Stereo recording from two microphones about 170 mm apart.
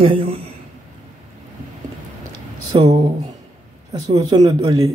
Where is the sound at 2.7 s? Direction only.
30° right (ahead or behind).